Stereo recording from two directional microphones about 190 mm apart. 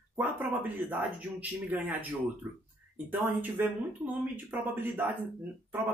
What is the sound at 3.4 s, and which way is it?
Speech, 10° right (ahead or behind).